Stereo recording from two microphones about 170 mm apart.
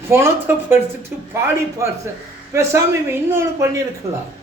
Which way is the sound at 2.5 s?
15° right (ahead or behind).